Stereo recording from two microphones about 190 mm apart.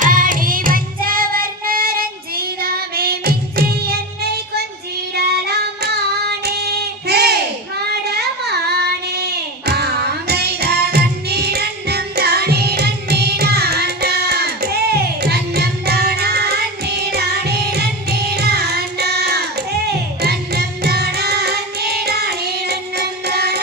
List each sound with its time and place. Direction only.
0.0 s music: 45° right (ahead or behind)
5.1 s child singing: 60° right (ahead or behind)
8.0 s a sound: 60° right (ahead or behind)
9.1 s music: 60° right (ahead or behind)